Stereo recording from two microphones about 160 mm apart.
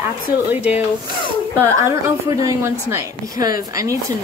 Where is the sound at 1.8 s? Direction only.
20° right (ahead or behind).